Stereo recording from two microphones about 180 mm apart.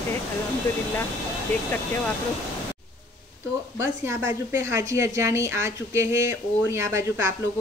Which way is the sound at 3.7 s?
15° right (ahead or behind).